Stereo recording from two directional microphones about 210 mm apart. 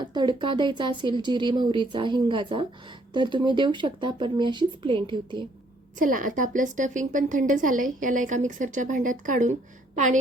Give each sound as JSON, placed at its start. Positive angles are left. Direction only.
{"t": 0.0, "sound": "speech", "side_deg": -20}
{"t": 6.0, "sound": "a woman's voice", "side_deg": -40}